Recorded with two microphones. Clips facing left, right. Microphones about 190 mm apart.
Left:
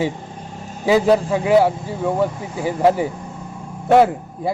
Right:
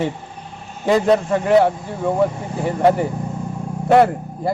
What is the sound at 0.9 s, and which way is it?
Speech, 5° left (ahead or behind).